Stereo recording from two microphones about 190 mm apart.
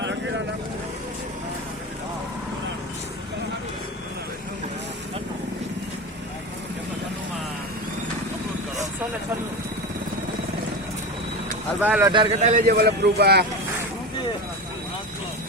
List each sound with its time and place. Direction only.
11.8 s speech: 10° right (ahead or behind)
12.1 s speech: 30° right (ahead or behind)
12.6 s speech: 55° right (ahead or behind)